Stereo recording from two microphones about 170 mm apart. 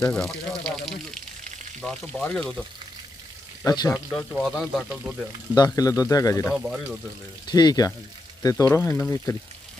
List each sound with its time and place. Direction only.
0.0 s speech: 5° left (ahead or behind)
3.6 s speech: 20° left (ahead or behind)
4.3 s speech: centre (ahead or behind)
5.5 s speech: 20° left (ahead or behind)
6.4 s speech: centre (ahead or behind)
7.4 s speech: 25° left (ahead or behind)